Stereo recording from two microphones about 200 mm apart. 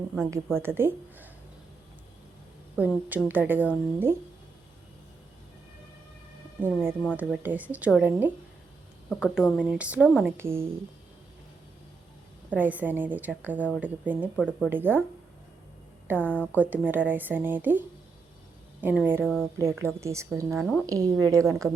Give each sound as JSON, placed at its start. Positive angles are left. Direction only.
{"t": 0.3, "sound": "a woman's voice", "side_deg": -15}
{"t": 2.7, "sound": "a woman's voice", "side_deg": -5}
{"t": 6.6, "sound": "a woman's voice", "side_deg": -10}
{"t": 12.5, "sound": "a woman's voice", "side_deg": -10}
{"t": 16.0, "sound": "a woman's voice", "side_deg": -10}
{"t": 16.3, "sound": "a woman's voice", "side_deg": 5}
{"t": 16.6, "sound": "a woman's voice", "side_deg": -10}
{"t": 20.5, "sound": "a woman's voice", "side_deg": -5}
{"t": 20.8, "sound": "a woman's voice", "side_deg": -15}